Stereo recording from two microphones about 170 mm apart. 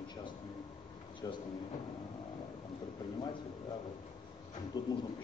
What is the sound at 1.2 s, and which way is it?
Speech, 20° left (ahead or behind).